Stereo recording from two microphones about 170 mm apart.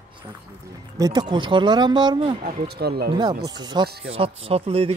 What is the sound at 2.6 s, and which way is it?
Speech, 70° right (ahead or behind).